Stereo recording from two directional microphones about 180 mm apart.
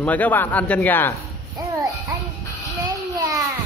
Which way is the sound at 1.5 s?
25° right (ahead or behind).